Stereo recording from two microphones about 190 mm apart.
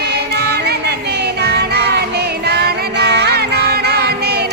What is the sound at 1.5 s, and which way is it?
Music, 60° right (ahead or behind).